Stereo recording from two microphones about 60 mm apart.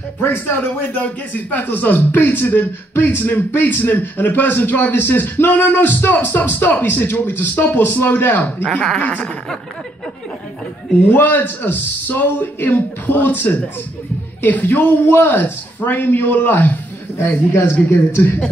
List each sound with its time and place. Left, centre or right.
0.2 s speech: left
9.0 s speech: left
11.1 s speech: left